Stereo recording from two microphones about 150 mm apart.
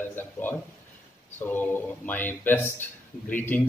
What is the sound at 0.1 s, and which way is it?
Speech, 15° left (ahead or behind).